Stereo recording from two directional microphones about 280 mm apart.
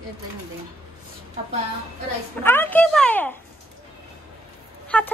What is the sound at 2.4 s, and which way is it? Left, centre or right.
Speech, centre.